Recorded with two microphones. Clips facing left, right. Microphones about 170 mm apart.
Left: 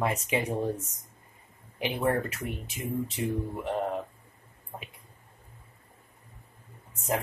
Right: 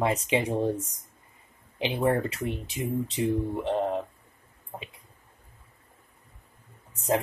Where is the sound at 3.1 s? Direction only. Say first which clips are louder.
Right 4 dB; 25° right (ahead or behind).